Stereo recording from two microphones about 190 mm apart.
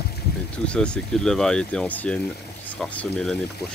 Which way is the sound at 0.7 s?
5° left (ahead or behind).